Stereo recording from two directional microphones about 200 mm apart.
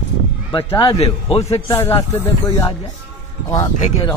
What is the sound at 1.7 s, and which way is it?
Speech, 10° left (ahead or behind).